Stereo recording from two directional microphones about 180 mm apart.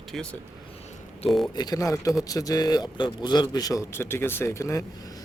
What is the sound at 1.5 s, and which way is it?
A man's voice, 20° left (ahead or behind).